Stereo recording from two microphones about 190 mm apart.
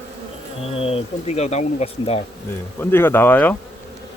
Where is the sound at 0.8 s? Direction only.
30° left (ahead or behind).